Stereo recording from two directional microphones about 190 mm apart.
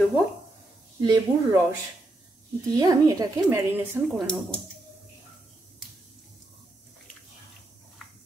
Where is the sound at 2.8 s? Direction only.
20° right (ahead or behind).